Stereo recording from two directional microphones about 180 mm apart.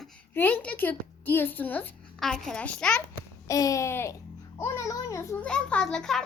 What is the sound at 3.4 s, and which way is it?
A child's voice, 20° left (ahead or behind).